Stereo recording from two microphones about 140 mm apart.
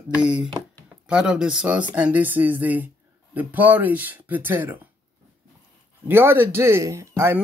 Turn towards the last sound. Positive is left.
turn(degrees=-20)  # may be behind; listen again after turning